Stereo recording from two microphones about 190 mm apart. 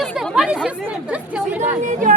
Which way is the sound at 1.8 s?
40° right (ahead or behind).